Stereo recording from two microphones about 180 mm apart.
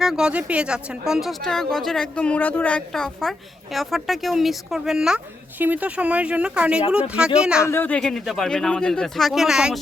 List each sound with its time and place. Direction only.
0.0 s speech: 5° right (ahead or behind)
7.7 s speech: 10° left (ahead or behind)